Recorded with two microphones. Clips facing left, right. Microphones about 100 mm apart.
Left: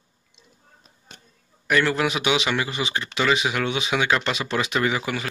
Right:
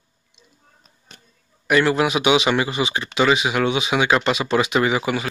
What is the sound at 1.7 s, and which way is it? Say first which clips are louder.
Speech: right 4 dB; 15° right (ahead or behind).